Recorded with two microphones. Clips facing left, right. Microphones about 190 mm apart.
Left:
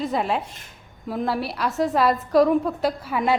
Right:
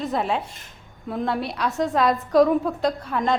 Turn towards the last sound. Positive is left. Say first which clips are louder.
# even
turn(degrees=5)  # may be behind; listen again after turning